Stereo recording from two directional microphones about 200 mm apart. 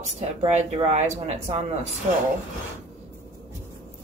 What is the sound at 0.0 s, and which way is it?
Speech, 35° right (ahead or behind).